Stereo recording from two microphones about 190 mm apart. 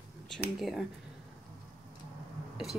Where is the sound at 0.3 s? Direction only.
Centre (ahead or behind).